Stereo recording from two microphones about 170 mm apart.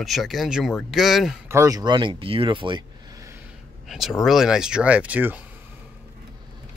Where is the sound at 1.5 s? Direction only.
20° right (ahead or behind).